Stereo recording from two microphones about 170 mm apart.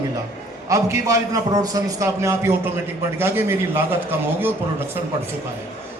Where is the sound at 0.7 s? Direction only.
20° right (ahead or behind).